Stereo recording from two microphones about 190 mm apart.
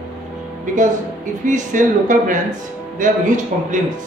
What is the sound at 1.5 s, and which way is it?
Speech, 40° right (ahead or behind).